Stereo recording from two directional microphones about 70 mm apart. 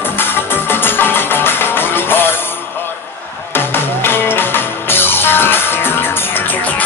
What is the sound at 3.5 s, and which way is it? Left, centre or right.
Music, left.